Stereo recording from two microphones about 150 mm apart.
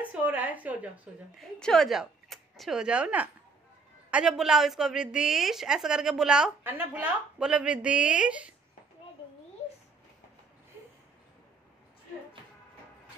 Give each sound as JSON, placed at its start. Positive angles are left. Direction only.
{"t": 0.1, "sound": "a woman's voice", "side_deg": -10}
{"t": 1.6, "sound": "a woman's voice", "side_deg": 0}